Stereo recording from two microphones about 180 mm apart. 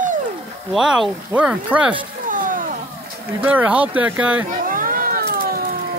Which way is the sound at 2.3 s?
50° right (ahead or behind).